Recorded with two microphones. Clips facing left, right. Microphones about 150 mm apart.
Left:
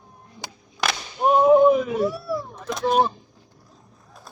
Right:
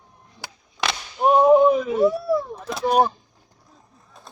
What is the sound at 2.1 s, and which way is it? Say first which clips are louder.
Speech: right 6 dB; 20° right (ahead or behind).